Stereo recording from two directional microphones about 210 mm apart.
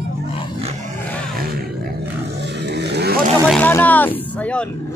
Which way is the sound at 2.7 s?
50° right (ahead or behind).